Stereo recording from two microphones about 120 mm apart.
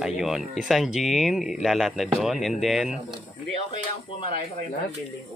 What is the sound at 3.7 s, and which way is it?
Speech, 45° left (ahead or behind).